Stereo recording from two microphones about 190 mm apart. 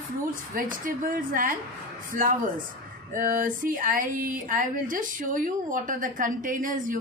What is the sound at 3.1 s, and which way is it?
Speech, 45° right (ahead or behind).